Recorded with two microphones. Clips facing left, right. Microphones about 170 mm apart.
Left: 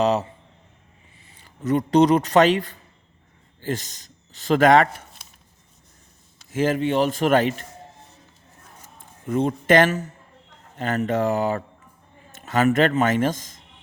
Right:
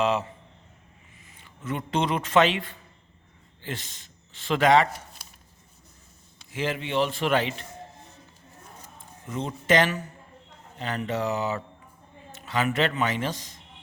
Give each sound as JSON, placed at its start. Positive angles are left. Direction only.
{"t": 0.0, "sound": "a sound", "side_deg": 40}
{"t": 1.3, "sound": "speech", "side_deg": 40}
{"t": 6.5, "sound": "a man's voice", "side_deg": 45}
{"t": 9.2, "sound": "a man's voice", "side_deg": 55}